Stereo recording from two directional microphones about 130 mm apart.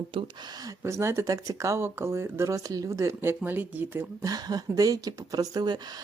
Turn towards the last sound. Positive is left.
turn(degrees=-35)  # may be behind; listen again after turning